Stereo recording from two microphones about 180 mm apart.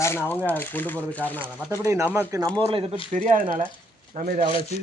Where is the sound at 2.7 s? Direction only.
30° right (ahead or behind).